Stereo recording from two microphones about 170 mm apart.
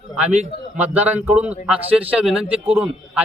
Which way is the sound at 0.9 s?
10° right (ahead or behind).